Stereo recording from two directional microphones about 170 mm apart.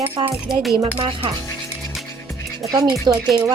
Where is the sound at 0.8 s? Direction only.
30° right (ahead or behind).